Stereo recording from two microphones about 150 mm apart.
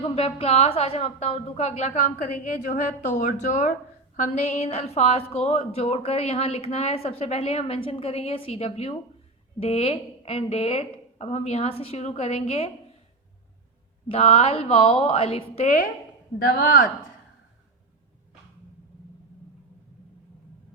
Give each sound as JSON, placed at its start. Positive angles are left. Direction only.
{"t": 0.0, "sound": "a woman's voice", "side_deg": 45}
{"t": 14.1, "sound": "a woman's voice", "side_deg": 45}
{"t": 16.4, "sound": "speech", "side_deg": 75}